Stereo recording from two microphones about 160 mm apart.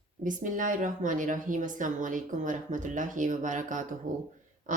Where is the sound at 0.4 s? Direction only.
55° right (ahead or behind).